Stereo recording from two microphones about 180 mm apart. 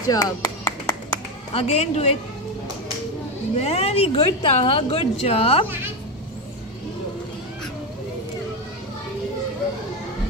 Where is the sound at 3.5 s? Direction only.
35° left (ahead or behind).